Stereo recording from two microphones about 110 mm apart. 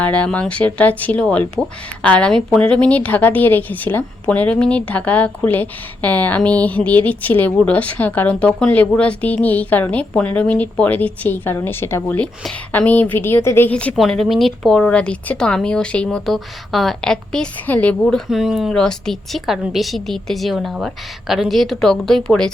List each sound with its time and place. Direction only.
0.0 s a woman's voice: 10° left (ahead or behind)
13.9 s speech: centre (ahead or behind)